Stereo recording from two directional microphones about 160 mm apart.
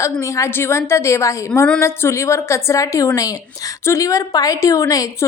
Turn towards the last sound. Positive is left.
turn(degrees=20)  # may be behind; listen again after turning